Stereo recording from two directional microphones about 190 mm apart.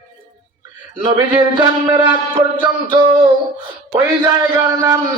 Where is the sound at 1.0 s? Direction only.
25° right (ahead or behind).